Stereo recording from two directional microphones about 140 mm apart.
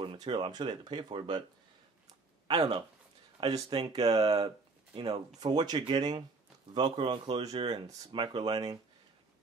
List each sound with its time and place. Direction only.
0.0 s speech: 35° right (ahead or behind)
2.4 s speech: 35° right (ahead or behind)
4.9 s speech: 40° right (ahead or behind)